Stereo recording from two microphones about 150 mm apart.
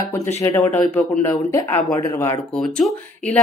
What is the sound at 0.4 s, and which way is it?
Speech, 15° left (ahead or behind).